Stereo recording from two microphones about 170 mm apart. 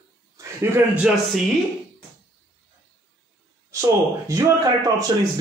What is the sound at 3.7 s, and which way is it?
Speech, 15° right (ahead or behind).